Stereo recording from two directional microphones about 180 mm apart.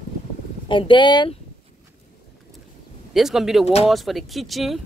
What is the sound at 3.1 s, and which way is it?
Speech, centre (ahead or behind).